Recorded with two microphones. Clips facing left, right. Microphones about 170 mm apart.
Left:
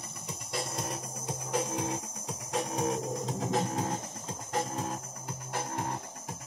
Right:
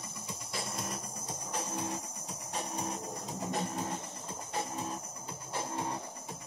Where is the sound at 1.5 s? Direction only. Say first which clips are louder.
Left 5 dB; 90° left.